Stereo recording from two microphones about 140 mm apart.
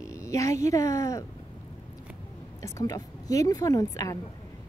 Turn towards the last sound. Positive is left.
turn(degrees=25)  # may be behind; listen again after turning